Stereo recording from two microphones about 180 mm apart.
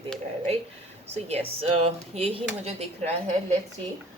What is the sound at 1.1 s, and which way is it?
Speech, 35° right (ahead or behind).